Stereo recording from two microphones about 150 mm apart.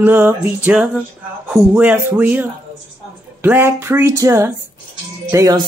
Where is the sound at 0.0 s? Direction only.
15° right (ahead or behind).